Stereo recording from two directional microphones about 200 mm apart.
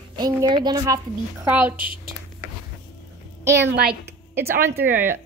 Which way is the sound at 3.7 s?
55° right (ahead or behind).